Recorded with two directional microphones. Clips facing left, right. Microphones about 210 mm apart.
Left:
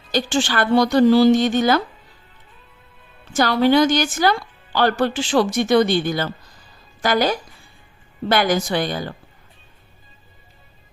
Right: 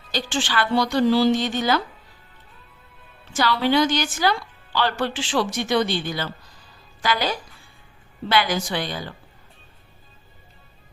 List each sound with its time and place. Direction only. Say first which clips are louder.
0.1 s speech: left 5 dB; 45° left (ahead or behind)
3.3 s speech: left 5 dB; 45° left (ahead or behind)